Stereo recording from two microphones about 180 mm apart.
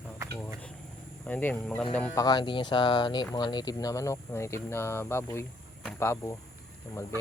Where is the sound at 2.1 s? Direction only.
20° left (ahead or behind).